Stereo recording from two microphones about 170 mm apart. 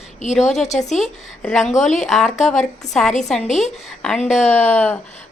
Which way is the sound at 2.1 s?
Centre (ahead or behind).